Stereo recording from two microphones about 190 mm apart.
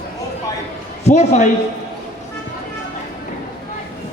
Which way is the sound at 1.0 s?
35° left (ahead or behind).